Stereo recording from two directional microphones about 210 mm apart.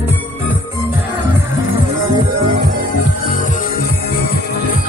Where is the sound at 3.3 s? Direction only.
40° left (ahead or behind).